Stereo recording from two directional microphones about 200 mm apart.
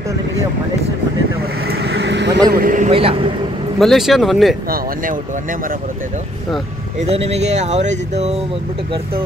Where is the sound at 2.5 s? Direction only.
40° right (ahead or behind).